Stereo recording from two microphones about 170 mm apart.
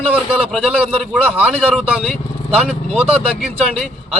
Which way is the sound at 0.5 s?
5° right (ahead or behind).